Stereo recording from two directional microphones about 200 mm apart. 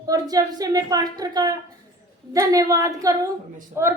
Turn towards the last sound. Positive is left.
turn(degrees=-10)  # may be behind; listen again after turning